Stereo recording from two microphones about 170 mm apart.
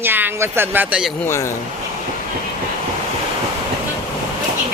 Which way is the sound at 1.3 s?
15° left (ahead or behind).